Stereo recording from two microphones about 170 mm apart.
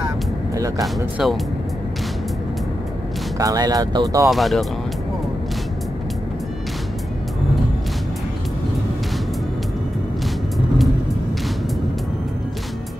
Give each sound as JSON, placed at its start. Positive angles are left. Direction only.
{"t": 0.9, "sound": "speech", "side_deg": 0}
{"t": 3.3, "sound": "speech", "side_deg": -20}
{"t": 4.3, "sound": "speech", "side_deg": 0}